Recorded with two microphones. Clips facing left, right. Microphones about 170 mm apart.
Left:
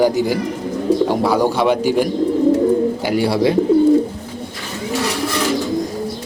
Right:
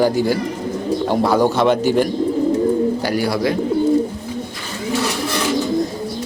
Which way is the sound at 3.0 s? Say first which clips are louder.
Left 3 dB; 20° left (ahead or behind).